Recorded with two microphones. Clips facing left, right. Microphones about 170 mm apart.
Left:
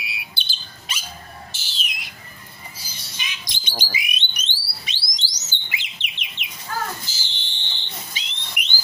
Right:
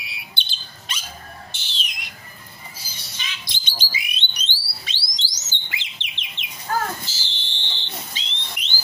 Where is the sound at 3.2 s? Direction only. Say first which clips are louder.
Even; 15° left (ahead or behind).